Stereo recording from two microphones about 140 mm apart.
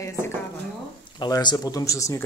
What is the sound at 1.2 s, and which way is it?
Speech, 30° left (ahead or behind).